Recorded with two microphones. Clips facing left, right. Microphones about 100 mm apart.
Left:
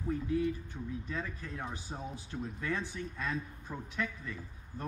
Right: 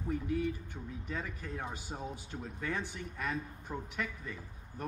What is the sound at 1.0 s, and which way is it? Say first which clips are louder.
Speech: left 1 dB; 15° right (ahead or behind).